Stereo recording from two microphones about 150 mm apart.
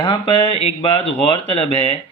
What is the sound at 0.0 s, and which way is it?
Speech, 35° left (ahead or behind).